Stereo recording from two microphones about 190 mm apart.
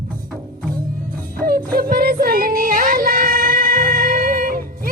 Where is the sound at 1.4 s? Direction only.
50° right (ahead or behind).